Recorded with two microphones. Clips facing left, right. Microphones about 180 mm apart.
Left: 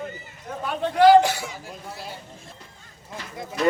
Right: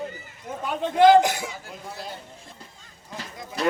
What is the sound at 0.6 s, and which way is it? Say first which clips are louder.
Speech: even; 20° right (ahead or behind).